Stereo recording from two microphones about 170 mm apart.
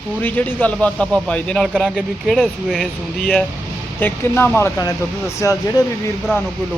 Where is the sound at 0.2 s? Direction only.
10° left (ahead or behind).